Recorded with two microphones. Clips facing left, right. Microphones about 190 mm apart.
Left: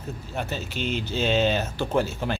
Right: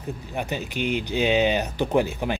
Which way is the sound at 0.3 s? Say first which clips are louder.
Right 1 dB; 15° right (ahead or behind).